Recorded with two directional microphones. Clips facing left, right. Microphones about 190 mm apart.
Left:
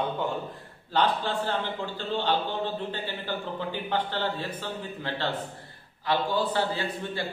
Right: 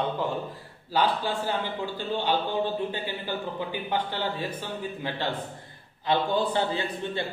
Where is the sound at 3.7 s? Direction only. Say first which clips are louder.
Left 2 dB; 10° right (ahead or behind).